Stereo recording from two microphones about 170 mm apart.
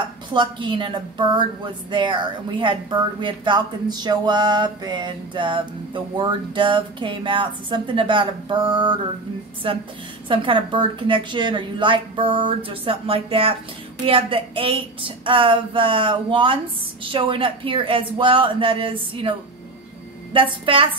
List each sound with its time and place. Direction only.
0.3 s a woman's voice: 30° right (ahead or behind)
20.3 s a woman's voice: 30° right (ahead or behind)